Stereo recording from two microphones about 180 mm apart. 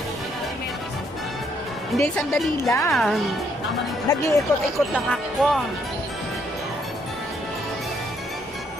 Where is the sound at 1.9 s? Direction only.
Centre (ahead or behind).